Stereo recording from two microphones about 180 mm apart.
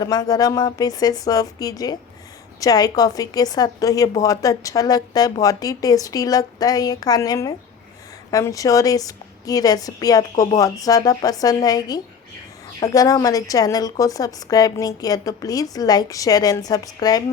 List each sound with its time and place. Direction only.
0.0 s a woman's voice: 20° left (ahead or behind)